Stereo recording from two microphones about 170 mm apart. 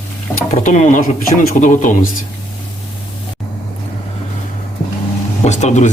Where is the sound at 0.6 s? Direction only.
45° left (ahead or behind).